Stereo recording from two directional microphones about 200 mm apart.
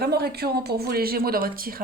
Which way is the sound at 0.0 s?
50° right (ahead or behind).